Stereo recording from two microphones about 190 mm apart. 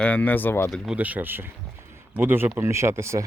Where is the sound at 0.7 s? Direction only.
5° right (ahead or behind).